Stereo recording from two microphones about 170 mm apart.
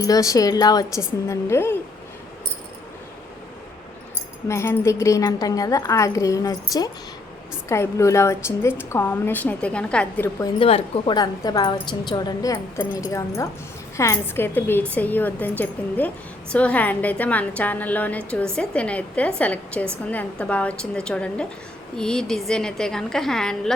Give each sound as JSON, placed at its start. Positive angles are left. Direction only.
{"t": 0.0, "sound": "a woman's voice", "side_deg": 20}
{"t": 4.4, "sound": "a woman's voice", "side_deg": 15}
{"t": 10.4, "sound": "a woman's voice", "side_deg": 30}